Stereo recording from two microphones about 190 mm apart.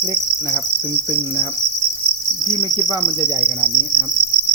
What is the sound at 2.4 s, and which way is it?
Insect, 20° right (ahead or behind).